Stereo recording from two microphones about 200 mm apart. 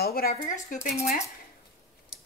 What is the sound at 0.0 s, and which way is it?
Speech, 50° left (ahead or behind).